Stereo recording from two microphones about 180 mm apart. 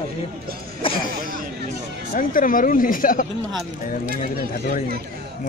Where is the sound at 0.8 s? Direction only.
30° left (ahead or behind).